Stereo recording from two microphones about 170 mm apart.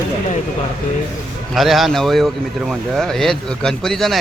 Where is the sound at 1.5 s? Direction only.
Centre (ahead or behind).